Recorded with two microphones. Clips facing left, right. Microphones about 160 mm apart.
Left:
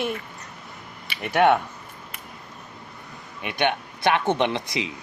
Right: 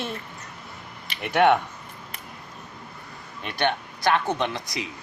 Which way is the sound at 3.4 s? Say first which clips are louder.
Left 1 dB; 15° left (ahead or behind).